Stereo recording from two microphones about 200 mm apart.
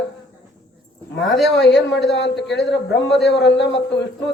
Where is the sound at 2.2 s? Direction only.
60° left (ahead or behind).